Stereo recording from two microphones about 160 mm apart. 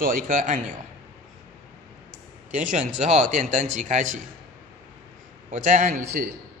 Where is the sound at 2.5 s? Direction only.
50° right (ahead or behind).